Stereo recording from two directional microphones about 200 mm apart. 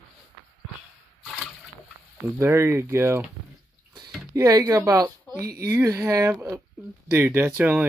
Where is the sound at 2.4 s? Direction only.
10° right (ahead or behind).